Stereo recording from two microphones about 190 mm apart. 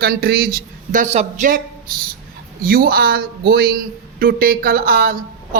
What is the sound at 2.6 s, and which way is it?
A man's voice, 50° right (ahead or behind).